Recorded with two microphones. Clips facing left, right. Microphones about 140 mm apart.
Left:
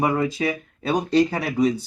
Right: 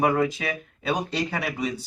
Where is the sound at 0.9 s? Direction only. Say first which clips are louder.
Left 7 dB; 40° left (ahead or behind).